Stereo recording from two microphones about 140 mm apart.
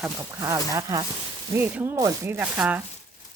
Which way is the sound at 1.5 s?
15° right (ahead or behind).